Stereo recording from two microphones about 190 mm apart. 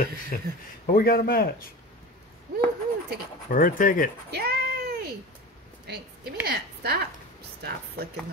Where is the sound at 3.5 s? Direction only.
45° left (ahead or behind).